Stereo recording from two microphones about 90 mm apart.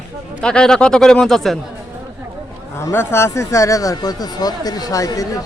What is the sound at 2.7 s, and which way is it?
Speech, 30° left (ahead or behind).